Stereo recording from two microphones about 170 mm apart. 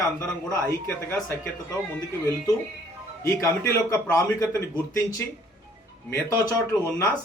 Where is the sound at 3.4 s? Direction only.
20° left (ahead or behind).